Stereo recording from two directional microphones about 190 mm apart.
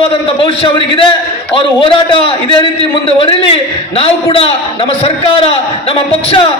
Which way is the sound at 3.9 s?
30° left (ahead or behind).